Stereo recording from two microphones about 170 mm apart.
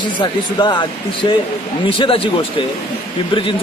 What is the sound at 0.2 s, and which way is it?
Speech, 25° left (ahead or behind).